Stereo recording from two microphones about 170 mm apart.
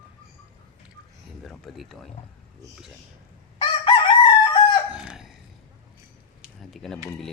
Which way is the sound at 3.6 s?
30° left (ahead or behind).